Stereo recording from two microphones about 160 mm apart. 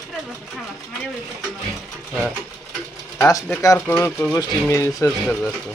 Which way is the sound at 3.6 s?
20° left (ahead or behind).